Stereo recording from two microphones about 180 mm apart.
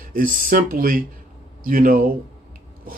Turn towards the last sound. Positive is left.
turn(degrees=-50)  # may be behind; listen again after turning